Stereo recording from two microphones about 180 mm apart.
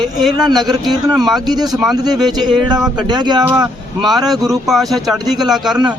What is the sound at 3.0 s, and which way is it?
Speech, 25° right (ahead or behind).